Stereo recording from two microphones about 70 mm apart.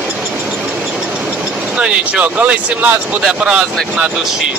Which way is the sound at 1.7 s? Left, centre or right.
Centre.